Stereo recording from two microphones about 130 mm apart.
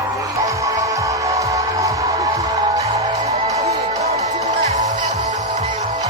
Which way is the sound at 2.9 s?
55° right (ahead or behind).